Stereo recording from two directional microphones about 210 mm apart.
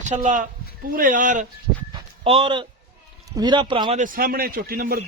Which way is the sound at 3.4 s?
20° right (ahead or behind).